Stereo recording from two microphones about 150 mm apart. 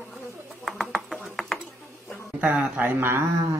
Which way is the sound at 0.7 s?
Centre (ahead or behind).